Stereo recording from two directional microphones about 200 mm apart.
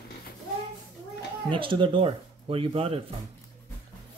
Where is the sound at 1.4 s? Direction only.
25° right (ahead or behind).